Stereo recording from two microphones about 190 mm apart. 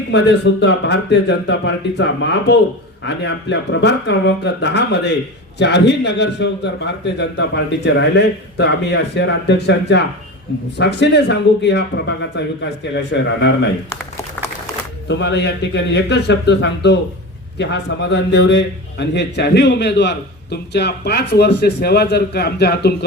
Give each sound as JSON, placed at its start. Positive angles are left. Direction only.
{"t": 0.1, "sound": "a man's voice", "side_deg": 65}
{"t": 15.0, "sound": "a man's voice", "side_deg": 70}